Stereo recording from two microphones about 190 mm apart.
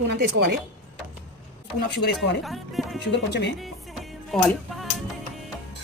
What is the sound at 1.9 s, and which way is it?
Speech, 60° left (ahead or behind).